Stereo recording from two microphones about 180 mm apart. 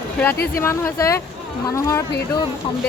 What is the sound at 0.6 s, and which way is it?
Speech, 15° left (ahead or behind).